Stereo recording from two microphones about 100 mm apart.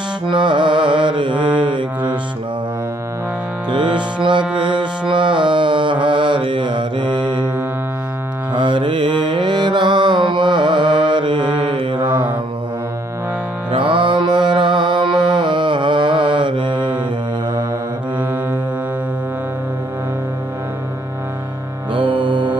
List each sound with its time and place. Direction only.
0.3 s mantra: 50° right (ahead or behind)
3.7 s music: 50° right (ahead or behind)
8.5 s music: 55° right (ahead or behind)
12.1 s mantra: 15° right (ahead or behind)
13.7 s music: 55° right (ahead or behind)
21.9 s music: 55° right (ahead or behind)